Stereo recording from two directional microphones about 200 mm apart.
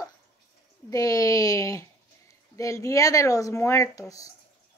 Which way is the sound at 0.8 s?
15° left (ahead or behind).